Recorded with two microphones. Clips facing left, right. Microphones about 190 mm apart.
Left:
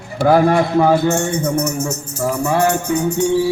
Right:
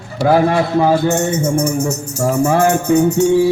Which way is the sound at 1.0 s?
20° right (ahead or behind).